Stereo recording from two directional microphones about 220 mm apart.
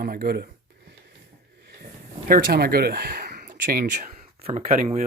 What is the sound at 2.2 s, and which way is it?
Speech, 40° right (ahead or behind).